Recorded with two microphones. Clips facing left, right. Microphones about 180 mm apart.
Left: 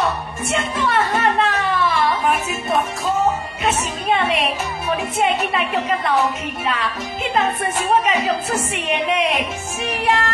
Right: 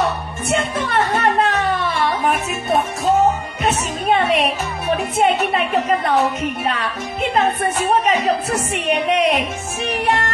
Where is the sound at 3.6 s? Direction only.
40° right (ahead or behind).